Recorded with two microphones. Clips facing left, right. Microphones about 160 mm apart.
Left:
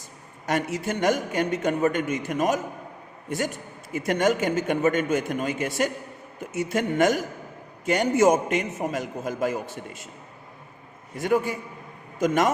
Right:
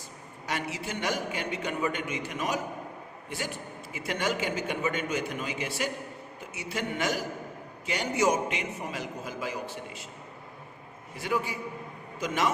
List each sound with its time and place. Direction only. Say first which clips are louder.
0.4 s a man's voice: left 8 dB; 50° left (ahead or behind)
11.2 s a man's voice: left 7 dB; 50° left (ahead or behind)